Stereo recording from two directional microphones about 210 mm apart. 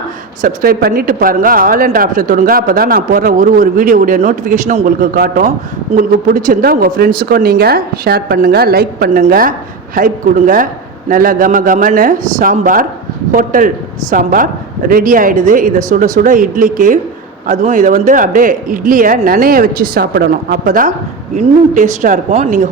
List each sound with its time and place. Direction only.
0.4 s speech: 45° right (ahead or behind)